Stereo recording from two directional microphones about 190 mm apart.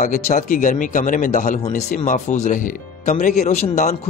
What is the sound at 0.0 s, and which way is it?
Speech, 40° left (ahead or behind).